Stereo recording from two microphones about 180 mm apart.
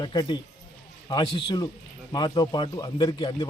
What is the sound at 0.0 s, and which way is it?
Speech, 25° left (ahead or behind).